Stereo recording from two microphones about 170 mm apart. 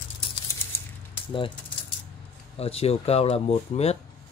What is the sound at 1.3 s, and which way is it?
Speech, 30° left (ahead or behind).